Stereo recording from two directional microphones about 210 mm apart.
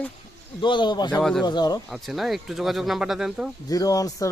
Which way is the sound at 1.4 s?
20° left (ahead or behind).